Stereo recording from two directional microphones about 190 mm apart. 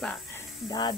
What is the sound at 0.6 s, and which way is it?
Speech, 20° left (ahead or behind).